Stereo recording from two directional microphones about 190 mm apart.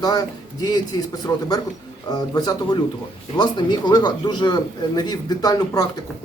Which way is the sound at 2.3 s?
20° left (ahead or behind).